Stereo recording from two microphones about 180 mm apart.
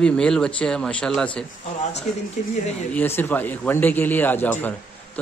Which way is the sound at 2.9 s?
10° left (ahead or behind).